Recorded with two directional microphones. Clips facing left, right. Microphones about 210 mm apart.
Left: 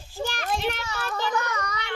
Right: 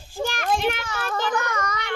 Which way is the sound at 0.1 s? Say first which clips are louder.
Right 4 dB; 50° right (ahead or behind).